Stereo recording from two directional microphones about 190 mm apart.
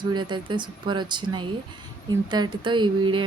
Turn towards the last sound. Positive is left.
turn(degrees=-25)  # may be behind; listen again after turning